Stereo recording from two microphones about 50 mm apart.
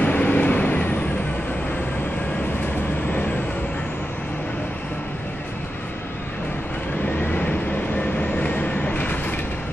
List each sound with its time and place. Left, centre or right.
0.0 s vehicle: left
7.2 s vehicle: left
8.2 s train: left